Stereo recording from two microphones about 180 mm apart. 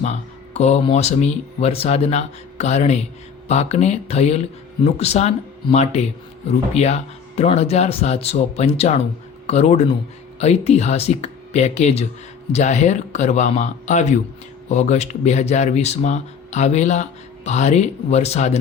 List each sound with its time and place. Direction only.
0.0 s speech: 40° left (ahead or behind)